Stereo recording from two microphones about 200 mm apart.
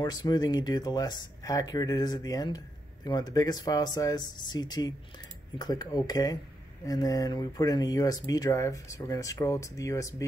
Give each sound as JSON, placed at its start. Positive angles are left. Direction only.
{"t": 0.0, "sound": "speech", "side_deg": 20}